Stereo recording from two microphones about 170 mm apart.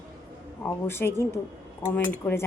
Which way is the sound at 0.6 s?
15° left (ahead or behind).